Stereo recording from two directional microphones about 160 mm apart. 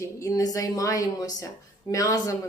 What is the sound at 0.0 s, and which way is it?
Speech, 20° left (ahead or behind).